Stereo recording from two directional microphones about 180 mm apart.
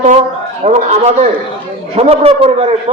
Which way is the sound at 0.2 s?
35° right (ahead or behind).